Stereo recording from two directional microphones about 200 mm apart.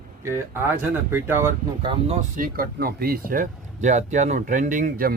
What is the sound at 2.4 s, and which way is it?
Speech, 45° right (ahead or behind).